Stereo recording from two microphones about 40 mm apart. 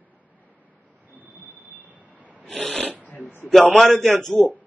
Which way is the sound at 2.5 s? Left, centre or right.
Centre.